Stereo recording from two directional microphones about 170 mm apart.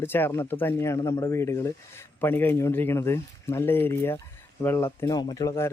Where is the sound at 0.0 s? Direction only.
15° left (ahead or behind).